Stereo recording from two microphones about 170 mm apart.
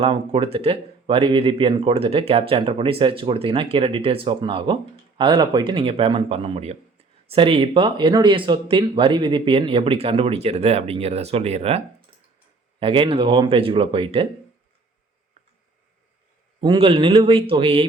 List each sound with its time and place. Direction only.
0.0 s speech: 30° right (ahead or behind)
12.8 s speech: 30° right (ahead or behind)
16.6 s speech: 30° right (ahead or behind)